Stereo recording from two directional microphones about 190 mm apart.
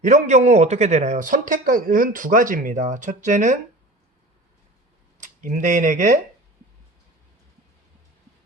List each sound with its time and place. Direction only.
0.0 s speech: 40° right (ahead or behind)
5.2 s speech: 40° right (ahead or behind)